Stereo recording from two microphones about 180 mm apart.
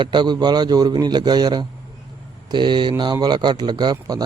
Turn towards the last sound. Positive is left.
turn(degrees=-20)  # may be behind; listen again after turning